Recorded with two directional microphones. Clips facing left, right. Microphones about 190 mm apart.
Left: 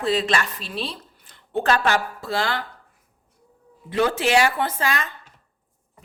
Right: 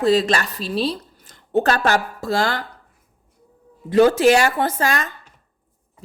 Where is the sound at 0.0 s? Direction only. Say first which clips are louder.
Right 5 dB; 40° right (ahead or behind).